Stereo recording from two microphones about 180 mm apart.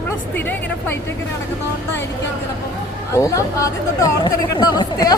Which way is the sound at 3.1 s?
15° left (ahead or behind).